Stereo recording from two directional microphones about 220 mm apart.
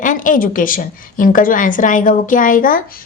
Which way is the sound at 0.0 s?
35° left (ahead or behind).